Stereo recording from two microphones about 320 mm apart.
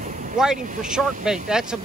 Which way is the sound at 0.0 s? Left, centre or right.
Right.